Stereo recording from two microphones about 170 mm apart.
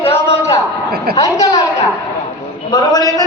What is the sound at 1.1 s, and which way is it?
Speech, 20° left (ahead or behind).